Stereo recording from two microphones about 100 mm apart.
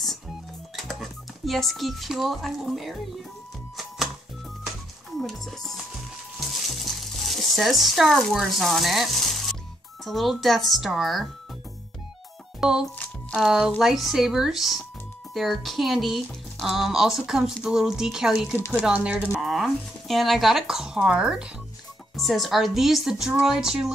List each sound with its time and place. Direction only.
0.0 s music: centre (ahead or behind)
5.2 s speech: centre (ahead or behind)
6.8 s speech: centre (ahead or behind)
12.5 s music: 5° right (ahead or behind)
12.9 s music: 15° left (ahead or behind)
13.5 s speech: 5° right (ahead or behind)
18.9 s speech: 15° right (ahead or behind)
19.4 s speech: centre (ahead or behind)